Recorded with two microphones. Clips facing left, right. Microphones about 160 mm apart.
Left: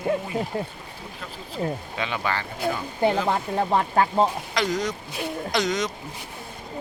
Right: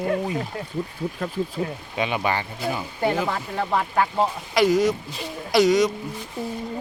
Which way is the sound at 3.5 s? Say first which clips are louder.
Even; 30° left (ahead or behind).